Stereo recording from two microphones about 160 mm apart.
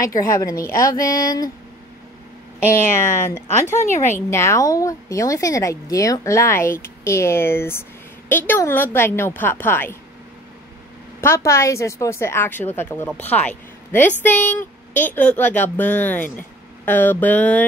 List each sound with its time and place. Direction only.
0.0 s a woman's voice: 20° left (ahead or behind)
2.7 s a woman's voice: 15° left (ahead or behind)
11.1 s a woman's voice: 15° left (ahead or behind)